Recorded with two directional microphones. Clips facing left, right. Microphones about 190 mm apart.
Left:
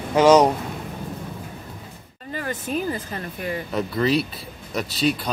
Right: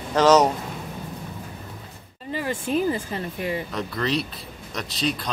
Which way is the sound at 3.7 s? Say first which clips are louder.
Left 5 dB; 5° left (ahead or behind).